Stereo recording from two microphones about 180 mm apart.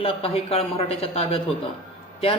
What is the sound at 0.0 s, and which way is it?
Speech, 30° left (ahead or behind).